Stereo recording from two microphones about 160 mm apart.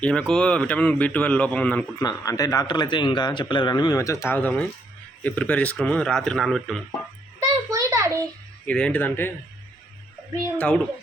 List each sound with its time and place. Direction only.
0.0 s speech: 5° left (ahead or behind)
2.0 s a man's voice: 20° left (ahead or behind); by 6.8 s centre (ahead or behind)
7.3 s a sound: 20° right (ahead or behind)
8.6 s speech: 5° left (ahead or behind)